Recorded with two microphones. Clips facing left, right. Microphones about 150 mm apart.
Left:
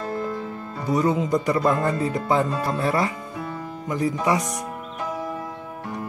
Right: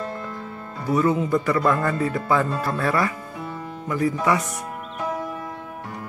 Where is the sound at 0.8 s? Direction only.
20° left (ahead or behind).